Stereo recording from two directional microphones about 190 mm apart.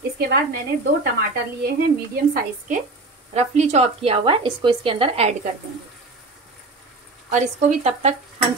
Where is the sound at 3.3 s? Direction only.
35° right (ahead or behind).